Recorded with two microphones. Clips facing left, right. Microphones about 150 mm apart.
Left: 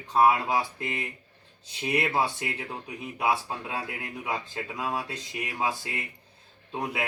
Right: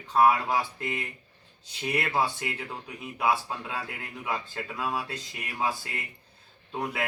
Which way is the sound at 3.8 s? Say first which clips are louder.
Left 2 dB; 20° left (ahead or behind).